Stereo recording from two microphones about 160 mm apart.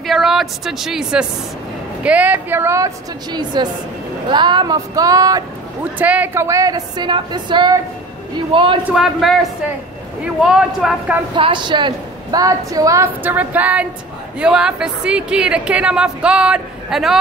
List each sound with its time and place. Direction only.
0.0 s a woman's voice: centre (ahead or behind); by 5.4 s 20° right (ahead or behind)
5.9 s a woman's voice: 10° right (ahead or behind); by 8.7 s 30° right (ahead or behind)
8.8 s speech: 5° right (ahead or behind)
11.3 s a woman's voice: 30° right (ahead or behind); by 17.2 s centre (ahead or behind)